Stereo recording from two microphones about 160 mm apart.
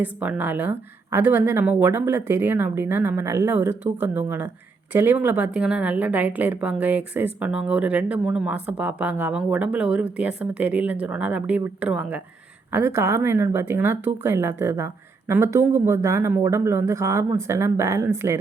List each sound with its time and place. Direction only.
0.0 s a woman's voice: 10° right (ahead or behind)